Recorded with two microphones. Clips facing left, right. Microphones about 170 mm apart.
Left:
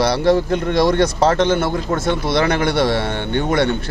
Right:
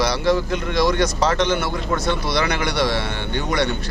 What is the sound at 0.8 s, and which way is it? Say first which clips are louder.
A man's voice: left 3 dB; 55° left (ahead or behind).